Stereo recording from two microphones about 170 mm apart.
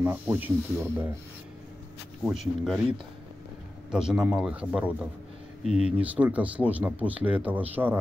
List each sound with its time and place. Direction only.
0.0 s speech: 10° right (ahead or behind)
2.2 s a man's voice: centre (ahead or behind)
3.9 s a man's voice: 5° right (ahead or behind)
5.7 s speech: 40° left (ahead or behind)
6.1 s speech: 10° right (ahead or behind)